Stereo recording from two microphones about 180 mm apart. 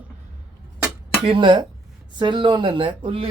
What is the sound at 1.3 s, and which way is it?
Speech, 25° right (ahead or behind).